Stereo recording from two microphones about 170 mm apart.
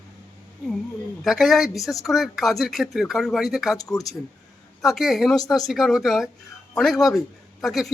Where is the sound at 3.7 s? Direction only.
20° left (ahead or behind).